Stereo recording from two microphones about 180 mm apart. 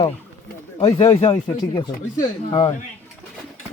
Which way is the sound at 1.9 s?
50° left (ahead or behind).